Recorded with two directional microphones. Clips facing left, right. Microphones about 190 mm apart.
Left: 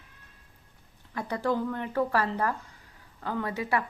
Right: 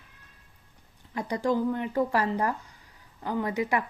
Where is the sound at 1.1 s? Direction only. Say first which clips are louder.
Right 2 dB; 15° right (ahead or behind).